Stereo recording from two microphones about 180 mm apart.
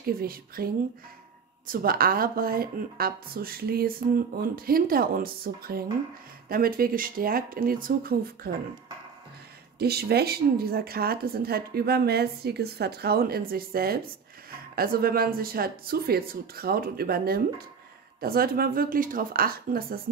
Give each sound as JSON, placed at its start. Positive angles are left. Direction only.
{"t": 0.0, "sound": "a woman's voice", "side_deg": -55}
{"t": 1.7, "sound": "a woman's voice", "side_deg": -55}
{"t": 9.8, "sound": "a woman's voice", "side_deg": -60}